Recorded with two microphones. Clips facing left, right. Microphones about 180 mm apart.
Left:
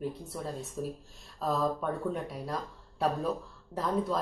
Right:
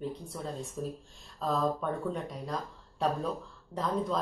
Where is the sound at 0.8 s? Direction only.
5° left (ahead or behind).